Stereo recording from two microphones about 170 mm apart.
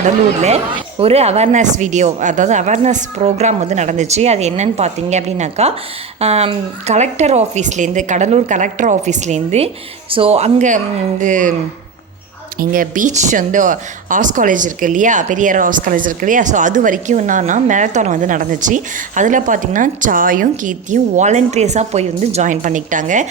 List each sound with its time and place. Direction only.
0.4 s speech: 35° right (ahead or behind)
12.5 s speech: 55° right (ahead or behind)